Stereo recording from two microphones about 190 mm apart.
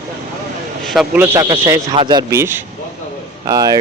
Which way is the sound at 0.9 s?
5° right (ahead or behind).